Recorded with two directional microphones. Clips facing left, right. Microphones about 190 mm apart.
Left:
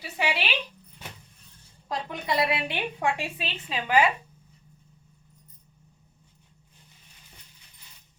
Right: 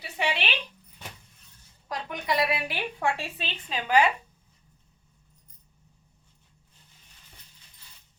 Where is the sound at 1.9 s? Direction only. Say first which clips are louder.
Left 1 dB; 25° left (ahead or behind).